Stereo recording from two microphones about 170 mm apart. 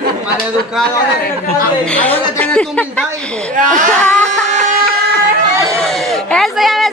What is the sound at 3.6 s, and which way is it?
Speech, 50° right (ahead or behind).